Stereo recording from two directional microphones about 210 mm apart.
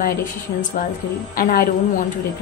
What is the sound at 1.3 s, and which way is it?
Speech, 45° left (ahead or behind).